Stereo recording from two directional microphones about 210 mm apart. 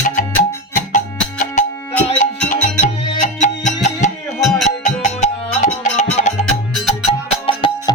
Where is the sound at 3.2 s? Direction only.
35° left (ahead or behind).